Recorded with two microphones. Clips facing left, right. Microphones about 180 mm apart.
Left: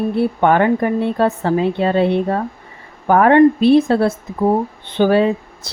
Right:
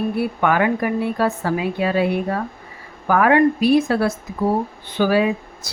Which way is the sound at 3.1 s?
30° left (ahead or behind).